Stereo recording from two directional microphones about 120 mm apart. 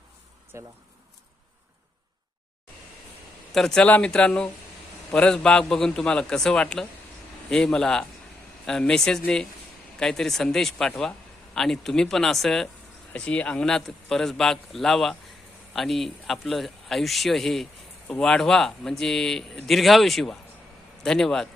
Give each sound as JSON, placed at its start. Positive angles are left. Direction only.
{"t": 0.5, "sound": "speech", "side_deg": -25}
{"t": 3.5, "sound": "speech", "side_deg": 5}